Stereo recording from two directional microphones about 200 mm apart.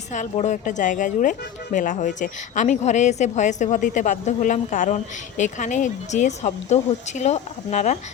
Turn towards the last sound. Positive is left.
turn(degrees=35)  # may be behind; listen again after turning